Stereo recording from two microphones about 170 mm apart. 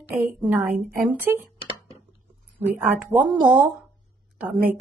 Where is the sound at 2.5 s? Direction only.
10° right (ahead or behind).